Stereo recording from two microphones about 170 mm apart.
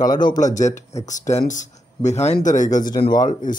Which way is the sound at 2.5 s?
20° left (ahead or behind).